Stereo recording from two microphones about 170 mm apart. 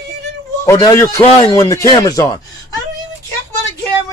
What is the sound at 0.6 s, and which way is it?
A man's voice, 15° left (ahead or behind).